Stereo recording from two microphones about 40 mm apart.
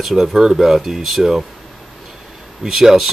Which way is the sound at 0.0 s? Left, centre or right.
Centre.